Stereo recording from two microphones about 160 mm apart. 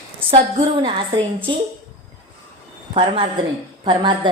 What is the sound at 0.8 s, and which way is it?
Speech, 30° right (ahead or behind).